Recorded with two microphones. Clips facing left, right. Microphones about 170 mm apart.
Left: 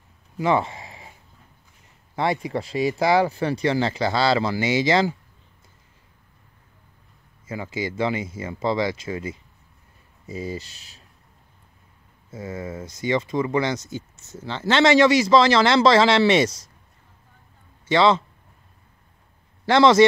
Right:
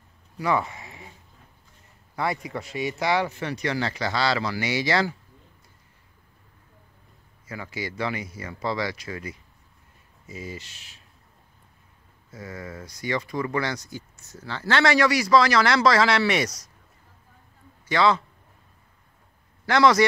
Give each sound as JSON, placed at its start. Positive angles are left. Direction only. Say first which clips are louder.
{"t": 0.4, "sound": "speech", "louder": "left 4 dB", "side_deg": 25}
{"t": 2.1, "sound": "speech", "louder": "left 4 dB", "side_deg": 25}
{"t": 7.4, "sound": "speech", "louder": "left 5 dB", "side_deg": 25}
{"t": 12.3, "sound": "speech", "louder": "left 5 dB", "side_deg": 25}
{"t": 17.8, "sound": "speech", "louder": "left 3 dB", "side_deg": 25}
{"t": 19.6, "sound": "a man's voice", "louder": "left 4 dB", "side_deg": 25}